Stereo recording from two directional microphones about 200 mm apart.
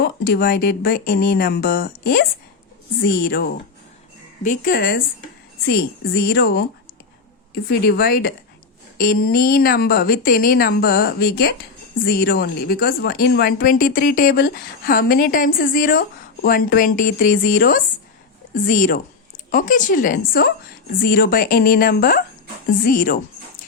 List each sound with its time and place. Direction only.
0.0 s a woman's voice: 45° left (ahead or behind)